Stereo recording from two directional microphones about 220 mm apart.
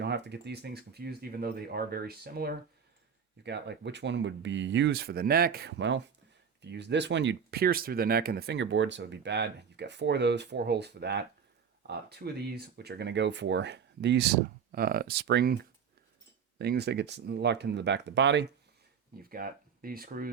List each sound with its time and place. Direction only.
0.0 s speech: 50° right (ahead or behind)
16.6 s speech: 50° right (ahead or behind)
19.3 s speech: 40° right (ahead or behind)